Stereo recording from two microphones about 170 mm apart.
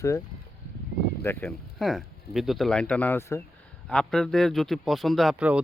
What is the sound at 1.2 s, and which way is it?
Speech, 10° left (ahead or behind).